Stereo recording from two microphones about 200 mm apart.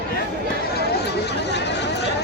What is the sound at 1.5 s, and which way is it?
Chatter, 60° left (ahead or behind).